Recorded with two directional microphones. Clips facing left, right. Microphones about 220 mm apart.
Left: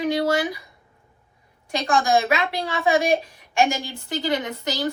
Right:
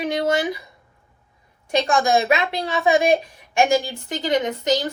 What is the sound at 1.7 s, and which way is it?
A woman's voice, 20° right (ahead or behind).